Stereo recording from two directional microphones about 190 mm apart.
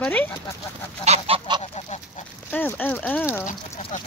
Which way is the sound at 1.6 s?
35° left (ahead or behind).